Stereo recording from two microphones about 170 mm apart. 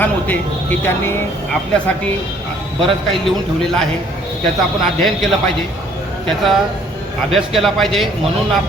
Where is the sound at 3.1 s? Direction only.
Centre (ahead or behind).